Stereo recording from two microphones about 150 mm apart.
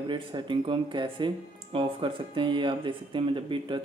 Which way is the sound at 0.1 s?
30° right (ahead or behind).